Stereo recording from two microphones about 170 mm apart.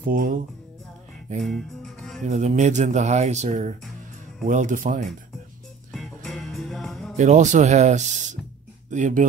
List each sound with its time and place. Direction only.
0.0 s speech: 55° right (ahead or behind)
1.4 s music: centre (ahead or behind)
2.2 s speech: 45° right (ahead or behind)
5.9 s music: centre (ahead or behind)
7.2 s speech: 45° right (ahead or behind)